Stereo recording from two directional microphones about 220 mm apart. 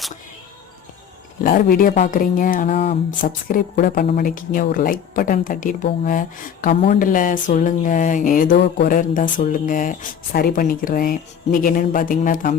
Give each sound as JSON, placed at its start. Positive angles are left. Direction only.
{"t": 1.5, "sound": "speech", "side_deg": 40}